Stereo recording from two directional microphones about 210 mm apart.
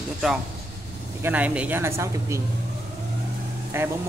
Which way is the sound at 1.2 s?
10° right (ahead or behind).